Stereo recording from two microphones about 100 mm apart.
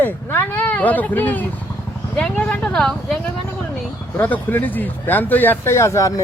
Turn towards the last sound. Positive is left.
turn(degrees=30)  # may be behind; listen again after turning